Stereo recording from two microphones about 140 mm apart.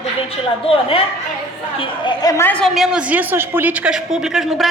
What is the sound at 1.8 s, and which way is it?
Speech, 30° left (ahead or behind).